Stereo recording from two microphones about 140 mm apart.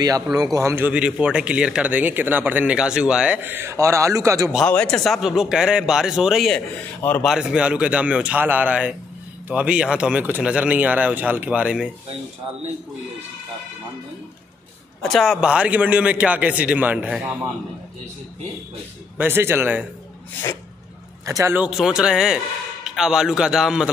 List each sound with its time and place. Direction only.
0.0 s speech: 25° right (ahead or behind)
4.6 s speech: 10° left (ahead or behind)
7.0 s a man's voice: 10° left (ahead or behind)
7.2 s speech: 5° right (ahead or behind)
15.0 s speech: centre (ahead or behind)
19.1 s speech: 15° right (ahead or behind)
21.3 s speech: 20° right (ahead or behind)
21.5 s speech: 5° right (ahead or behind)